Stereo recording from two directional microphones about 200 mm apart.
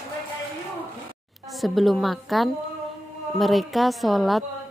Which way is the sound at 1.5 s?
Centre (ahead or behind).